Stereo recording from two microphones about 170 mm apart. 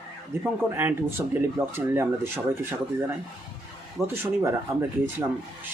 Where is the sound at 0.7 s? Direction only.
10° right (ahead or behind).